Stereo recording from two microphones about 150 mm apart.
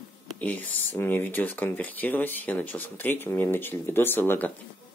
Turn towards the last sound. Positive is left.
turn(degrees=10)  # may be behind; listen again after turning